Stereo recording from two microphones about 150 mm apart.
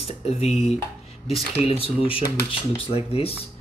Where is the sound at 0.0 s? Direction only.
45° left (ahead or behind).